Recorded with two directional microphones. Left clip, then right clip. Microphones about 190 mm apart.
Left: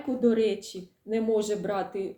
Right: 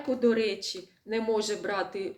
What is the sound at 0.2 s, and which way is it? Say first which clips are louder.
Speech: left 3 dB; 15° left (ahead or behind).